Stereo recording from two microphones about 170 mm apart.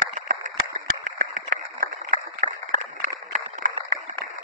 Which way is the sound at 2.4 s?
50° right (ahead or behind).